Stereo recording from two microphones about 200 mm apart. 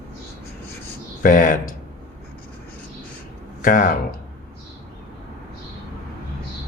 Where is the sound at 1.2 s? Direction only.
40° left (ahead or behind).